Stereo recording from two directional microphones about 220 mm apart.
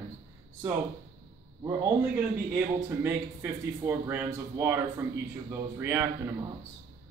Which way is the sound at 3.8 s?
10° right (ahead or behind).